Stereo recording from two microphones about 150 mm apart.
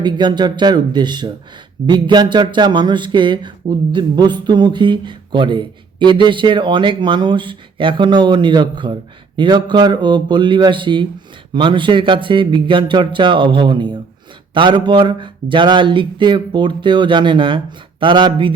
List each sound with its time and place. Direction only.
0.0 s speech: 30° right (ahead or behind)